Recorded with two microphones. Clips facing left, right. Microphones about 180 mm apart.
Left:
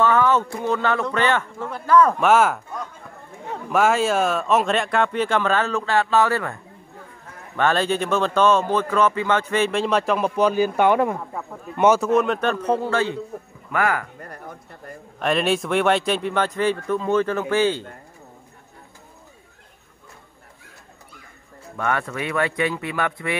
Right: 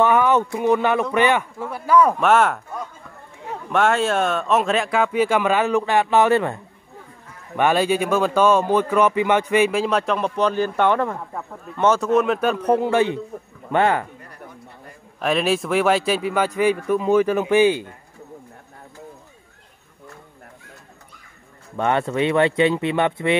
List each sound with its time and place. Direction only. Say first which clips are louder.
0.0 s a man's voice: right 2 dB; 15° right (ahead or behind)
2.1 s a man's voice: even; centre (ahead or behind); by 6.6 s 20° right (ahead or behind)
7.5 s a man's voice: right 2 dB; 10° right (ahead or behind); by 12.1 s 10° left (ahead or behind)
12.1 s a man's voice: right 1 dB; centre (ahead or behind); by 14.0 s 25° right (ahead or behind)
14.2 s a sound: left 4 dB; 50° left (ahead or behind)
15.1 s a man's voice: right 1 dB; centre (ahead or behind)
21.7 s speech: right 5 dB; 25° right (ahead or behind)